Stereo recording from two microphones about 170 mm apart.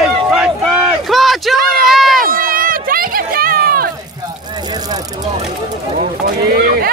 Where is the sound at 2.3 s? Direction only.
55° right (ahead or behind).